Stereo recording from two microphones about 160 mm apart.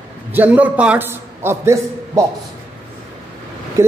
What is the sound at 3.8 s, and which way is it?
Speech, 15° right (ahead or behind).